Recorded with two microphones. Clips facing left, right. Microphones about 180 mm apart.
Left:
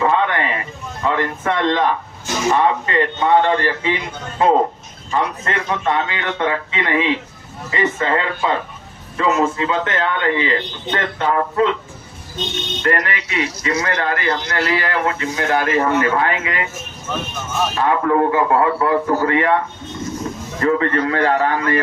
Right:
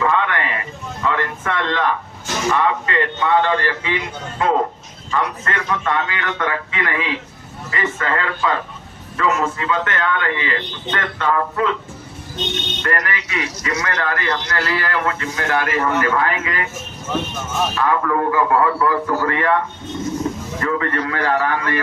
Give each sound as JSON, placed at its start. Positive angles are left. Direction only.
{"t": 0.0, "sound": "a sound", "side_deg": 30}
{"t": 1.0, "sound": "a man's voice", "side_deg": 30}
{"t": 12.8, "sound": "a man's voice", "side_deg": 25}
{"t": 17.7, "sound": "a man's voice", "side_deg": 25}
{"t": 20.6, "sound": "a man's voice", "side_deg": 30}